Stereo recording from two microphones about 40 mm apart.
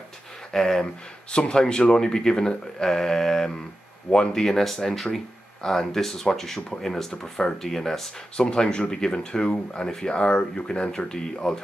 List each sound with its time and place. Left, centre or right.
0.5 s speech: centre
8.4 s speech: centre